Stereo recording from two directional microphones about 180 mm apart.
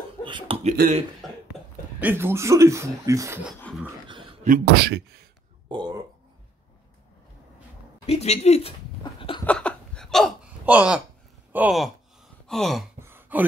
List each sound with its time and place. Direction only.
0.2 s speech: 25° right (ahead or behind)
2.0 s speech: 10° right (ahead or behind)
3.7 s a sound: 5° left (ahead or behind)
4.1 s a sound: 30° right (ahead or behind)
4.5 s speech: 60° right (ahead or behind)
5.7 s speech: 25° right (ahead or behind)
8.1 s speech: 35° left (ahead or behind)
9.5 s hiccup: 5° left (ahead or behind)
11.5 s speech: 5° right (ahead or behind)
12.4 s gasp: centre (ahead or behind)
13.0 s a sound: 10° right (ahead or behind)